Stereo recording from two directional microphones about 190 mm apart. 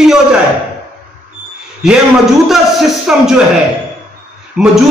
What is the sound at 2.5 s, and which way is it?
Speech, centre (ahead or behind).